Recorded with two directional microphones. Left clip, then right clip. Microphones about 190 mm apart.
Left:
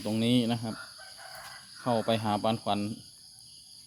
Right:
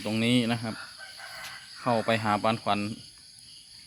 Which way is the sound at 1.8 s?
Centre (ahead or behind).